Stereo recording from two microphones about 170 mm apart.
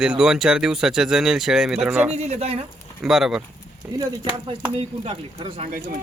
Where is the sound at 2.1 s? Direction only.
40° right (ahead or behind).